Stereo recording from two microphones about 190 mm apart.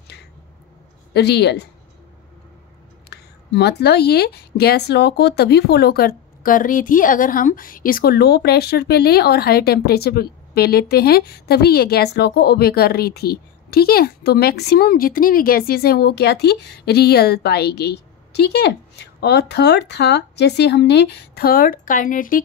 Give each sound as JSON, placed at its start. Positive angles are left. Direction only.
{"t": 0.1, "sound": "squish", "side_deg": 60}
{"t": 1.1, "sound": "speech", "side_deg": 60}
{"t": 3.1, "sound": "speech", "side_deg": 60}